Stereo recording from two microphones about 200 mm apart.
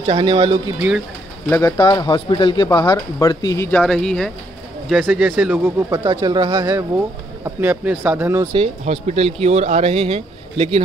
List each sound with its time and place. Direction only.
0.0 s speech: 25° right (ahead or behind)
0.7 s speech: 5° right (ahead or behind)
1.5 s speech: 15° left (ahead or behind)
3.8 s speech: centre (ahead or behind)
8.5 s speech: 35° right (ahead or behind)